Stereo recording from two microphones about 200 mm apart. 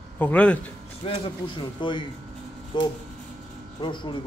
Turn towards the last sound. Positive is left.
turn(degrees=25)  # may be behind; listen again after turning